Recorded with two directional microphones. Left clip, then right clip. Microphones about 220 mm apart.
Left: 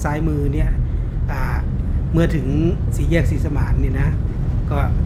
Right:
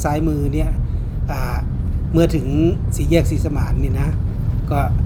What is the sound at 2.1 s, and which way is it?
Speech, 15° right (ahead or behind).